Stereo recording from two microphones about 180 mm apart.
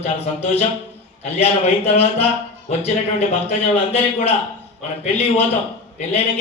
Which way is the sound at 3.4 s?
35° left (ahead or behind).